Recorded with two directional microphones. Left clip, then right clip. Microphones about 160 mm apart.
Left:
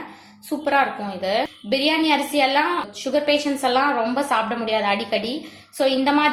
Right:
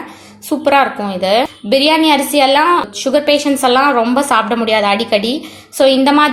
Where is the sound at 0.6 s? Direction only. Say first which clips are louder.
Right 8 dB; 35° right (ahead or behind).